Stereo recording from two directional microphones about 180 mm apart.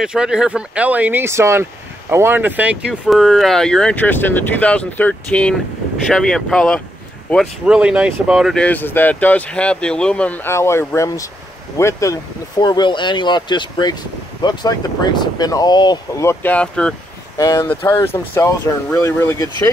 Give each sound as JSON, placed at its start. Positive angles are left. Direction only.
{"t": 0.0, "sound": "speech", "side_deg": -5}
{"t": 8.6, "sound": "speech", "side_deg": 10}
{"t": 17.4, "sound": "speech", "side_deg": 20}